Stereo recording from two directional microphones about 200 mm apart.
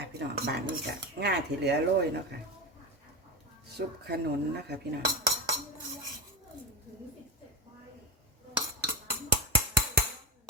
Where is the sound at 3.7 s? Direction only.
55° right (ahead or behind).